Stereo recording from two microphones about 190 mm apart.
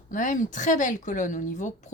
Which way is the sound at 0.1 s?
45° left (ahead or behind).